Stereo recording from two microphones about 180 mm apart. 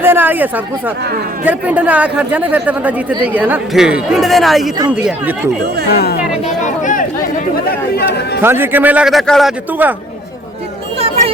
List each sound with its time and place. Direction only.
0.0 s a man's voice: 10° right (ahead or behind)
5.9 s speech: 60° left (ahead or behind)
6.4 s speech: 45° left (ahead or behind)
7.5 s speech: 60° left (ahead or behind)
8.4 s a man's voice: 10° right (ahead or behind)
10.9 s a sound: 35° right (ahead or behind)